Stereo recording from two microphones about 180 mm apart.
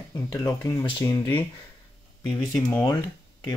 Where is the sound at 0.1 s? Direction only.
15° left (ahead or behind).